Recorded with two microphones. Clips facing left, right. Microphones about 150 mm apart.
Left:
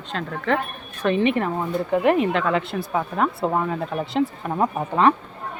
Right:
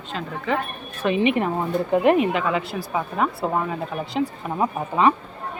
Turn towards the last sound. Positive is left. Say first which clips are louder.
# left 1 dB
turn(degrees=-5)  # may be behind; listen again after turning